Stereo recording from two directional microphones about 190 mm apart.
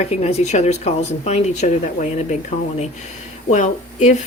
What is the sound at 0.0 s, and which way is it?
Speech, 35° left (ahead or behind).